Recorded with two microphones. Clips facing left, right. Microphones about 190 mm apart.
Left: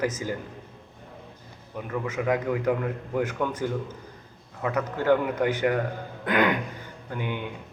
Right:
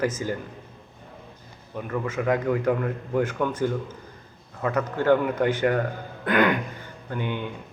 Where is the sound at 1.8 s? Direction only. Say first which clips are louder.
Right 2 dB; 15° left (ahead or behind).